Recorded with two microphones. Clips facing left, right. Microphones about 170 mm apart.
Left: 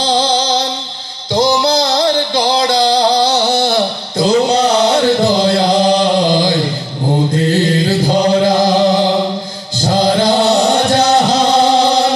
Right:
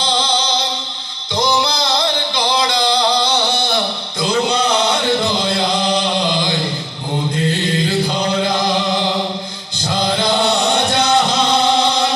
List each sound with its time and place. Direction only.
0.0 s music: 40° left (ahead or behind)
7.3 s mantra: 40° left (ahead or behind)
9.8 s music: 40° left (ahead or behind)